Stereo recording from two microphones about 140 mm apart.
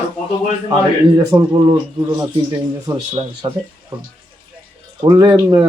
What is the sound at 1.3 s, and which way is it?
A man's voice, 25° right (ahead or behind).